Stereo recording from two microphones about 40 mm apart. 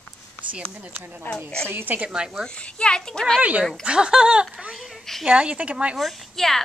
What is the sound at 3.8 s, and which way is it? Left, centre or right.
Speech, right.